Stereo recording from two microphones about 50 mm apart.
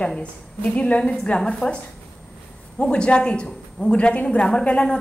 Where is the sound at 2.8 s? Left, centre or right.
Left.